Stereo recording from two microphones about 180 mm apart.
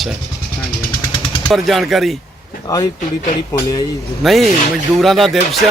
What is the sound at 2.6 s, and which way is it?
Speech, 20° left (ahead or behind).